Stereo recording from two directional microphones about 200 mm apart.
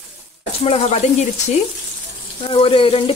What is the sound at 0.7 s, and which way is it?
Speech, 30° left (ahead or behind).